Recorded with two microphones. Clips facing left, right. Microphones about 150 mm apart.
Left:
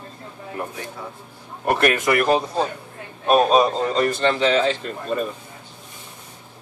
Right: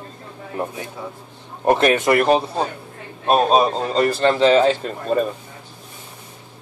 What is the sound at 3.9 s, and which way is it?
Speech, 35° right (ahead or behind).